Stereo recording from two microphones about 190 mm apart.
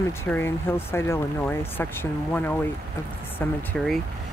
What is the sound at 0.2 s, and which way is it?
Speech, 10° left (ahead or behind).